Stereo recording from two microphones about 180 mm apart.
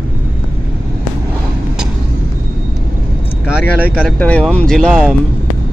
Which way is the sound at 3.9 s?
10° left (ahead or behind).